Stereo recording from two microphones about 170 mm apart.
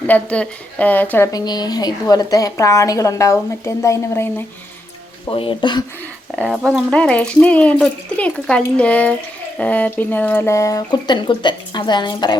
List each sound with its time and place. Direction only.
0.1 s a woman's voice: 10° left (ahead or behind)
5.3 s speech: 30° left (ahead or behind)
6.3 s speech: 5° right (ahead or behind)
6.9 s a woman's voice: 5° left (ahead or behind); by 12.4 s 25° left (ahead or behind)